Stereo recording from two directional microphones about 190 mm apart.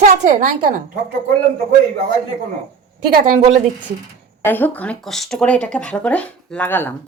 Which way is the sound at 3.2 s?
45° right (ahead or behind).